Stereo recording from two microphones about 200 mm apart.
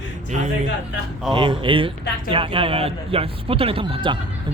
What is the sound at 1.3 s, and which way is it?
A man's voice, 25° right (ahead or behind).